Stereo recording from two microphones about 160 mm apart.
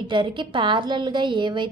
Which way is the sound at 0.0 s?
30° right (ahead or behind).